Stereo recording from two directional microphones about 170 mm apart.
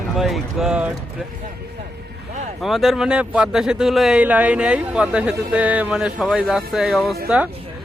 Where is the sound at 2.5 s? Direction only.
Centre (ahead or behind).